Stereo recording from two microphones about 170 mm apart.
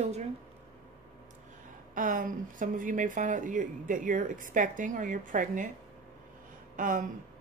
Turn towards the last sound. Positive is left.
turn(degrees=-50)  # may be behind; listen again after turning